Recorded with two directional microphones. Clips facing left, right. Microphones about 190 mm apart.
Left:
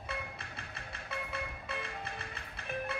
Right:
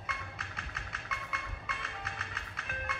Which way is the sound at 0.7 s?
35° left (ahead or behind).